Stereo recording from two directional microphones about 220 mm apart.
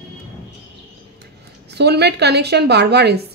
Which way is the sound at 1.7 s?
50° right (ahead or behind).